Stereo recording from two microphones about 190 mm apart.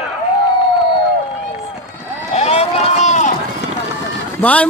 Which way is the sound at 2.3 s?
35° left (ahead or behind).